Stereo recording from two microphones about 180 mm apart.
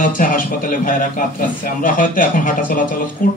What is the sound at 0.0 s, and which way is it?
A man's voice, 50° left (ahead or behind).